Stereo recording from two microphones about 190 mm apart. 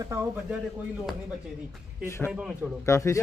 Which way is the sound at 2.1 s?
10° left (ahead or behind).